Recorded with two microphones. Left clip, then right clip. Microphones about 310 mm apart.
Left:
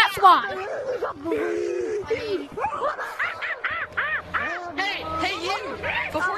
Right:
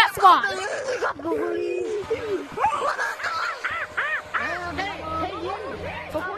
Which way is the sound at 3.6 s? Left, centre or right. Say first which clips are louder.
Even; centre.